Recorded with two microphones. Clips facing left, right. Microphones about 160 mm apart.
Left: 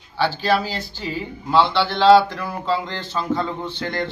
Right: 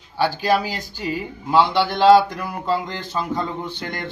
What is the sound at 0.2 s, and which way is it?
A man's voice, 10° right (ahead or behind).